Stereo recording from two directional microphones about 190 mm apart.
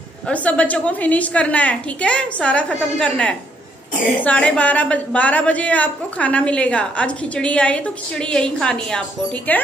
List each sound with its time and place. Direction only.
0.3 s a woman's voice: 5° left (ahead or behind)